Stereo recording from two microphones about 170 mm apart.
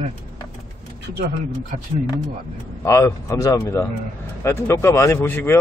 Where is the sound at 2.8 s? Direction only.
20° left (ahead or behind).